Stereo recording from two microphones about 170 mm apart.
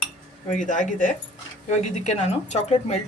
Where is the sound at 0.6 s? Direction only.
45° left (ahead or behind).